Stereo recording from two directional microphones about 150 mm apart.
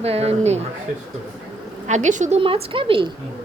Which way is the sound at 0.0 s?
45° right (ahead or behind).